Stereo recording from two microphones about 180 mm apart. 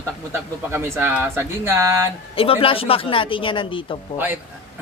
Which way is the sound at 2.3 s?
30° left (ahead or behind).